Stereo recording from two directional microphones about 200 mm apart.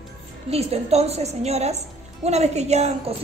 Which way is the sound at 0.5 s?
30° right (ahead or behind).